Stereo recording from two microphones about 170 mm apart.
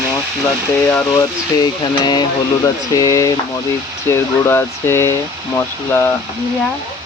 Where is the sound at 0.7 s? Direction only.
15° left (ahead or behind).